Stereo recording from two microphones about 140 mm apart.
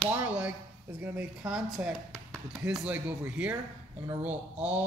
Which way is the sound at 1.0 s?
5° right (ahead or behind).